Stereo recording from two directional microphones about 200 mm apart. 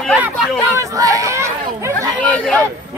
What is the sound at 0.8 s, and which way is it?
Speech, 15° right (ahead or behind).